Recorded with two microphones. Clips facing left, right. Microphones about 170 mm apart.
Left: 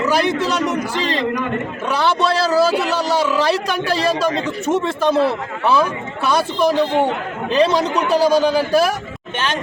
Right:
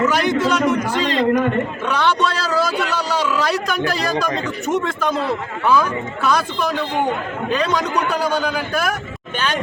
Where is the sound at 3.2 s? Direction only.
30° left (ahead or behind).